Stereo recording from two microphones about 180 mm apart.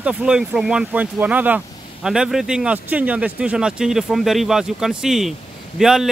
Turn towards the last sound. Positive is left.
turn(degrees=0)  # may be behind; listen again after turning